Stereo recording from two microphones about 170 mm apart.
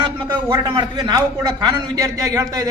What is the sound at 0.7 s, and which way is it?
A man's voice, 25° right (ahead or behind).